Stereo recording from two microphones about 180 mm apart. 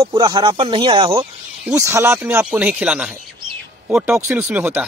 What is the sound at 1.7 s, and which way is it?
A man's voice, 15° right (ahead or behind).